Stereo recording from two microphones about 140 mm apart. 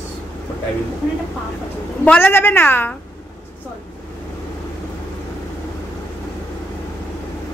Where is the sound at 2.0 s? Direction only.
15° left (ahead or behind).